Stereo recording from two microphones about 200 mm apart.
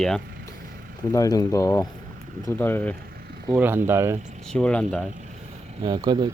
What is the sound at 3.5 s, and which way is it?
Speech, 10° right (ahead or behind).